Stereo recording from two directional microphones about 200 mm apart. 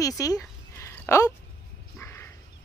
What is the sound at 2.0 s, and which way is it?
Dog, 10° left (ahead or behind).